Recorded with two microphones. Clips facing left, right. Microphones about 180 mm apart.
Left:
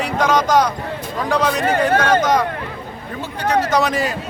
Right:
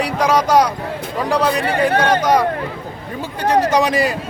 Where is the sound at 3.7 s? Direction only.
10° right (ahead or behind).